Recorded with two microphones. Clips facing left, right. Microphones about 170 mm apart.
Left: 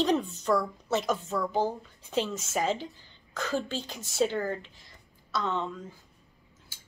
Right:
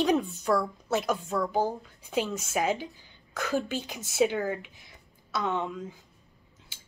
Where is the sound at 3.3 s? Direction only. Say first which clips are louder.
Right 2 dB; 15° right (ahead or behind).